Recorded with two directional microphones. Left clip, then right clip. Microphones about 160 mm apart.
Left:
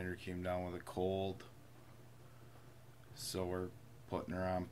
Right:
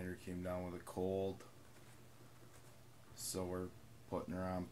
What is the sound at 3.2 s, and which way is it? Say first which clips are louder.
Speech: left 3 dB; centre (ahead or behind).